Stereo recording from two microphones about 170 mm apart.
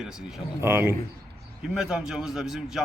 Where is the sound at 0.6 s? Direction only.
15° right (ahead or behind).